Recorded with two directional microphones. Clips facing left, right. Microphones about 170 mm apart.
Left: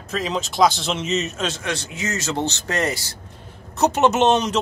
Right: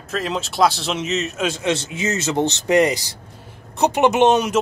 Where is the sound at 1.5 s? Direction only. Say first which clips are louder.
Right 6 dB; 20° right (ahead or behind).